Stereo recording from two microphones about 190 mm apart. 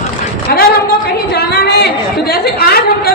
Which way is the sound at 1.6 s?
55° left (ahead or behind).